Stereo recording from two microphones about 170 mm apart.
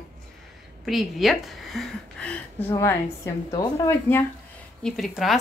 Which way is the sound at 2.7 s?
15° left (ahead or behind).